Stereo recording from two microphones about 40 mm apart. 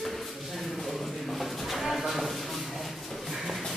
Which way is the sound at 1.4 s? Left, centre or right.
Centre.